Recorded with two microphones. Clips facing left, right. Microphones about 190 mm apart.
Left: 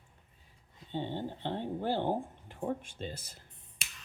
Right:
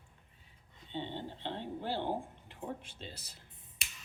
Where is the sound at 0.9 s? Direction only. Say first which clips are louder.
Left 4 dB; 45° left (ahead or behind).